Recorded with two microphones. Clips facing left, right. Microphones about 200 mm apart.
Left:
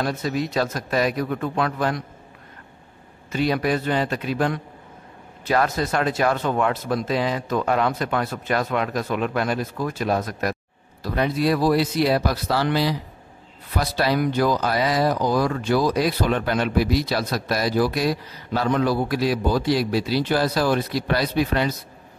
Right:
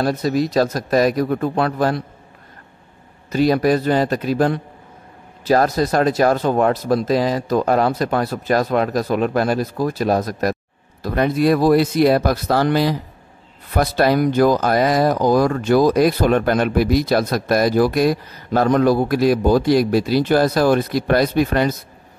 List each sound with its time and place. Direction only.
0.0 s speech: 40° right (ahead or behind)
3.3 s speech: 40° right (ahead or behind)